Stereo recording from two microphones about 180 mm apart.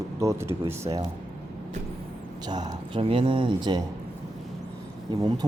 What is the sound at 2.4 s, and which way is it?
A man's voice, 20° right (ahead or behind).